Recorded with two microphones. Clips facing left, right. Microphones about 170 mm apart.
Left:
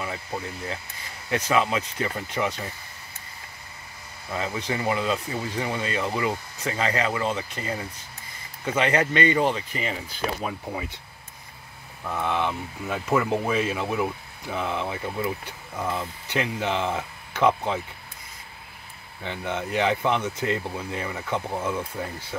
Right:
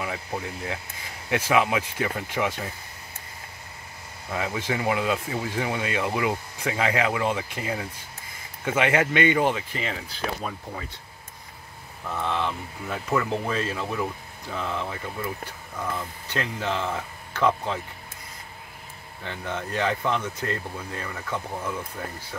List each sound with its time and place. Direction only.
0.0 s speech: 5° right (ahead or behind)
4.3 s speech: 5° right (ahead or behind)
9.7 s speech: 5° left (ahead or behind)
12.1 s speech: 10° left (ahead or behind)
19.2 s speech: 15° left (ahead or behind)